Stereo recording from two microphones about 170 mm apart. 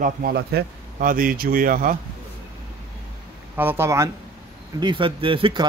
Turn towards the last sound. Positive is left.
turn(degrees=-30)  # may be behind; listen again after turning